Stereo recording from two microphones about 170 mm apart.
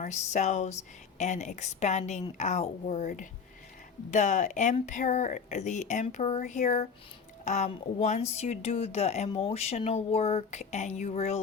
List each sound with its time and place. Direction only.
0.0 s speech: 45° left (ahead or behind)
4.1 s speech: 45° left (ahead or behind)
7.7 s a sound: 40° left (ahead or behind)